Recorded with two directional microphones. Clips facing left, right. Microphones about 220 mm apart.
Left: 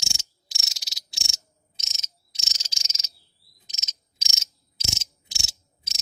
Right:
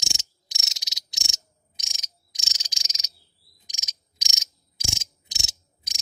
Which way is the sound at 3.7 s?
15° right (ahead or behind).